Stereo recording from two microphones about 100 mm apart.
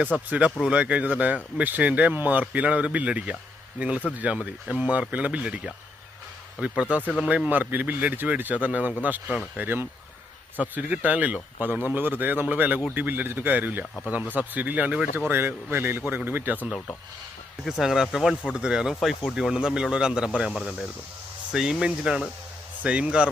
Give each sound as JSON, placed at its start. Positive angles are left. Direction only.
{"t": 0.3, "sound": "speech", "side_deg": -10}
{"t": 7.0, "sound": "speech", "side_deg": 10}
{"t": 7.3, "sound": "speech", "side_deg": -10}
{"t": 17.7, "sound": "speech", "side_deg": -5}
{"t": 20.5, "sound": "speech", "side_deg": 5}